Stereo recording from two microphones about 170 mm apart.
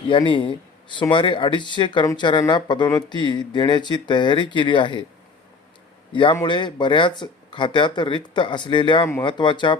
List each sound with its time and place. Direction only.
0.1 s speech: 30° left (ahead or behind)
6.4 s speech: 30° left (ahead or behind)